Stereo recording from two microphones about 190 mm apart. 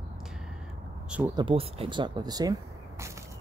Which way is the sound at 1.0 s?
5° right (ahead or behind).